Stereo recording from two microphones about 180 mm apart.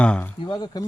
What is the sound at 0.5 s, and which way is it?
Speech, 25° left (ahead or behind).